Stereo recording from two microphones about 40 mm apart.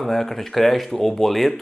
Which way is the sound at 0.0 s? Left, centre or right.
Centre.